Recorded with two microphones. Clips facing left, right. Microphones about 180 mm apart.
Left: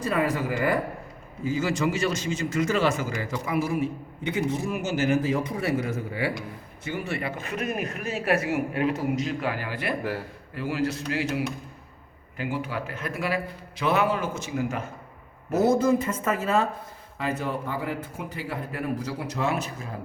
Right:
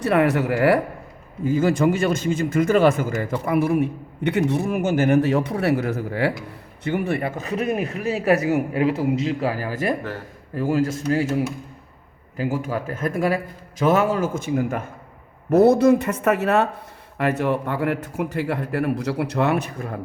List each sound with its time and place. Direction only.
0.0 s a man's voice: 70° right (ahead or behind)
1.5 s a man's voice: 55° right (ahead or behind)
12.4 s a man's voice: 40° right (ahead or behind); by 19.9 s 60° right (ahead or behind)